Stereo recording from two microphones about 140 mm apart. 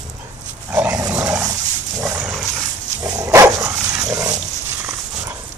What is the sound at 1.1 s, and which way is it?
Dog, 10° right (ahead or behind).